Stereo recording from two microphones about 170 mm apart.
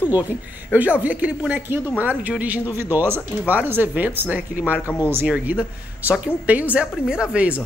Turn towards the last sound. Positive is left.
turn(degrees=-5)  # may be behind; listen again after turning